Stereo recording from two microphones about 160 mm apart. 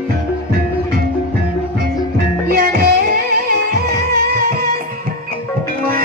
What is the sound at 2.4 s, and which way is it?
Music, 65° right (ahead or behind).